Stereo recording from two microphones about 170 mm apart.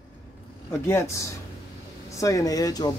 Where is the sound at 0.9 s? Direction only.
15° left (ahead or behind).